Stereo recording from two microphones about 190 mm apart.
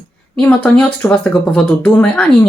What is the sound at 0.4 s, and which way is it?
Speech, 5° left (ahead or behind).